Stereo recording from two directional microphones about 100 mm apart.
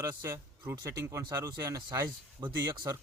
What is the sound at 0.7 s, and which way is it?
Speech, 25° right (ahead or behind).